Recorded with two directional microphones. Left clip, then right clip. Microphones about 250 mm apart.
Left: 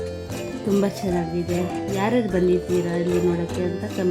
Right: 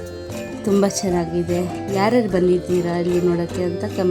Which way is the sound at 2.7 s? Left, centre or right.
Centre.